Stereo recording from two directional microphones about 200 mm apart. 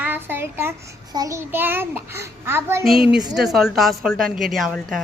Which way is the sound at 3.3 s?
Centre (ahead or behind).